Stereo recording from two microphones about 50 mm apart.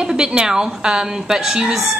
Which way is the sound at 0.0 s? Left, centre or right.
Centre.